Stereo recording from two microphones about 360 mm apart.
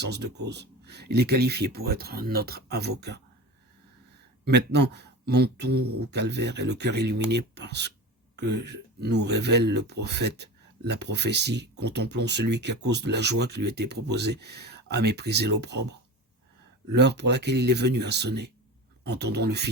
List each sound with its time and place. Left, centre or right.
0.0 s speech: right
4.4 s speech: right